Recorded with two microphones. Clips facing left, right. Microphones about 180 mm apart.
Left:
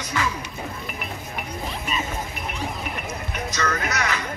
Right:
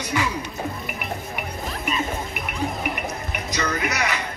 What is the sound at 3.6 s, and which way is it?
Music, 10° right (ahead or behind).